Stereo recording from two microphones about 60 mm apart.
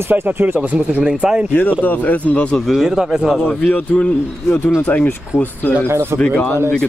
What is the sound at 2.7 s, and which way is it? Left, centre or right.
Speech, centre.